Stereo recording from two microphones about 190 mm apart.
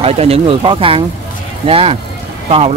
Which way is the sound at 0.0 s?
30° right (ahead or behind).